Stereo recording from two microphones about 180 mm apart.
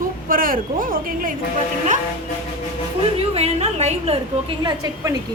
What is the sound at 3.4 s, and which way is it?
A woman's voice, 35° right (ahead or behind).